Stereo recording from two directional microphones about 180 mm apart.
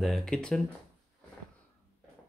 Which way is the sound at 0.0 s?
Centre (ahead or behind).